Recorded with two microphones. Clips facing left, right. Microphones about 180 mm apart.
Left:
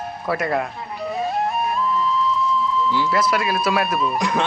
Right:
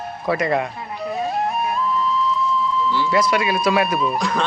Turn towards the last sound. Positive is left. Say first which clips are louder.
# left 1 dB
turn(degrees=20)  # may be behind; listen again after turning